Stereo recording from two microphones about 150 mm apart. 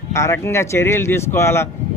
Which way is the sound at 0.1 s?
20° left (ahead or behind).